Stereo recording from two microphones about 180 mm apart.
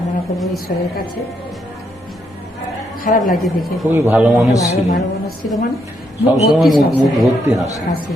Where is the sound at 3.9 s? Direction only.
10° right (ahead or behind).